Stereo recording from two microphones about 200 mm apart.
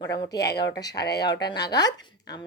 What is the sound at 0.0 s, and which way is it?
Speech, 20° left (ahead or behind).